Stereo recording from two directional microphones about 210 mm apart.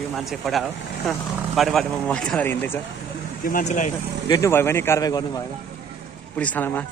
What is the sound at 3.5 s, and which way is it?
Speech, 40° left (ahead or behind).